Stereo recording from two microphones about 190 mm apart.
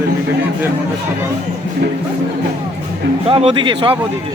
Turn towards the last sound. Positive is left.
turn(degrees=-25)  # may be behind; listen again after turning